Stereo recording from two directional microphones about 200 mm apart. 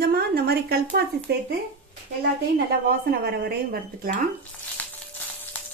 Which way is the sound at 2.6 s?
50° right (ahead or behind).